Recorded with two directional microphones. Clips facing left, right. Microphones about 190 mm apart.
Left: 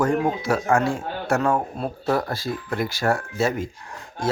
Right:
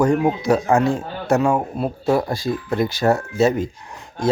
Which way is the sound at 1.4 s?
10° right (ahead or behind).